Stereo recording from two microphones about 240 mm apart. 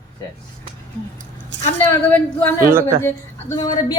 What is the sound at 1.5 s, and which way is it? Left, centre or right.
Speech, right.